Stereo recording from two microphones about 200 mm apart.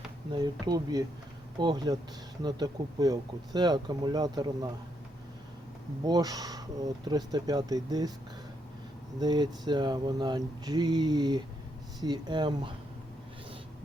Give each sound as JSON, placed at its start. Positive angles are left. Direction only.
{"t": 0.3, "sound": "speech", "side_deg": -20}
{"t": 6.1, "sound": "speech", "side_deg": -20}
{"t": 9.1, "sound": "speech", "side_deg": -20}